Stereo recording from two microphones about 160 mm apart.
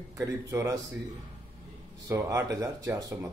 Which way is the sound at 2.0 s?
20° right (ahead or behind).